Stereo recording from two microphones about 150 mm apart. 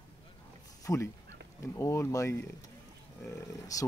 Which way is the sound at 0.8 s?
20° left (ahead or behind).